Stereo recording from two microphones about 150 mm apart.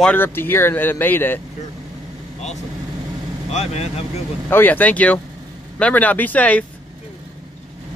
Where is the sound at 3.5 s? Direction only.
45° left (ahead or behind).